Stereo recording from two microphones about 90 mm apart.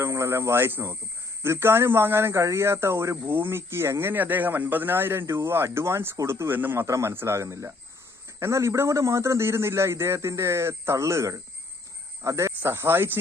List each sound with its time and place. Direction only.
0.0 s a man's voice: 30° right (ahead or behind)